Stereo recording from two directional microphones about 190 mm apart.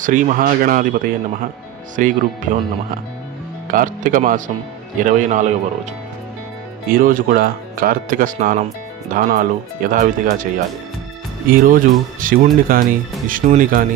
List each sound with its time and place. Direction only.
0.0 s a man's voice: 45° right (ahead or behind)
6.9 s speech: 45° right (ahead or behind)
11.5 s speech: 45° right (ahead or behind)